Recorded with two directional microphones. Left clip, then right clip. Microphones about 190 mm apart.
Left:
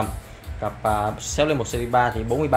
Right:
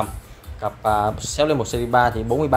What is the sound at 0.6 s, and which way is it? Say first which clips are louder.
Speech: right 3 dB; 30° right (ahead or behind).